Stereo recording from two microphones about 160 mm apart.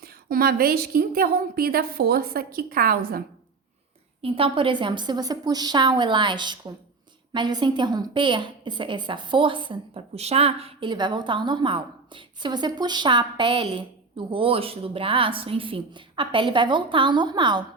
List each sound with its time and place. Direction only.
0.0 s a woman's voice: 70° right (ahead or behind)
4.2 s a woman's voice: 35° right (ahead or behind)